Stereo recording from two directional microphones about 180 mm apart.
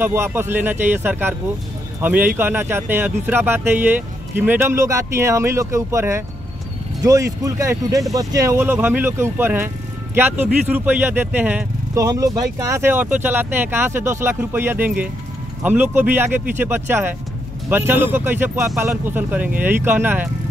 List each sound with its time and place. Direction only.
0.0 s speech: 10° right (ahead or behind)